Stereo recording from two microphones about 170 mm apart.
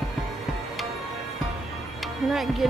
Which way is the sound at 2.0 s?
Centre (ahead or behind).